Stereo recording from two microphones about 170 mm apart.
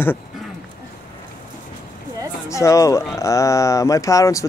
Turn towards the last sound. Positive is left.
turn(degrees=20)  # may be behind; listen again after turning